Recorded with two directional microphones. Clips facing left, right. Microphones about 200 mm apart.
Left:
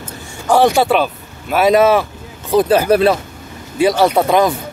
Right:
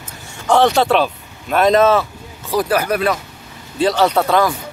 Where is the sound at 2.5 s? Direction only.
25° left (ahead or behind).